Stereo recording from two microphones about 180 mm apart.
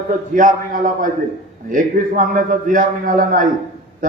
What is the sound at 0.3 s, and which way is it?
A man's voice, 45° right (ahead or behind).